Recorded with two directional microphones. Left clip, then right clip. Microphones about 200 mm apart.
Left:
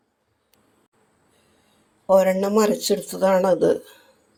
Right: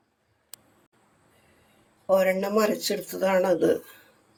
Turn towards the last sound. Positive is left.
turn(degrees=25)  # may be behind; listen again after turning